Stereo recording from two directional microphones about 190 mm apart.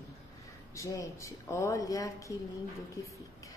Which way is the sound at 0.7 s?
15° left (ahead or behind).